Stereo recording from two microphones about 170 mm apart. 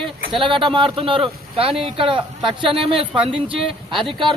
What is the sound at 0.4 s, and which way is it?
A man's voice, 30° right (ahead or behind).